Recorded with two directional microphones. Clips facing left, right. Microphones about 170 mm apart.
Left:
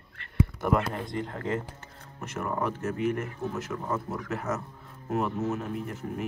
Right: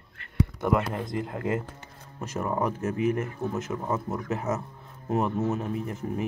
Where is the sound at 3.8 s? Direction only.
20° right (ahead or behind).